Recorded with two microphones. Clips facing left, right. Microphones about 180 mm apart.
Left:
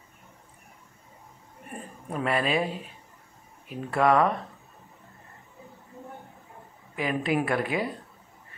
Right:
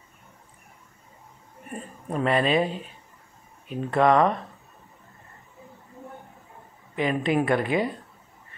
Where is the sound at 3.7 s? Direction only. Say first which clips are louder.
Right 3 dB; 5° left (ahead or behind).